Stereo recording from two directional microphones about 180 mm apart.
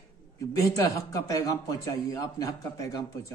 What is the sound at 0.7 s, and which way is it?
A man's voice, 20° left (ahead or behind).